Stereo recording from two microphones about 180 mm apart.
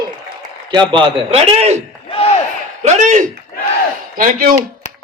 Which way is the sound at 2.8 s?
40° right (ahead or behind).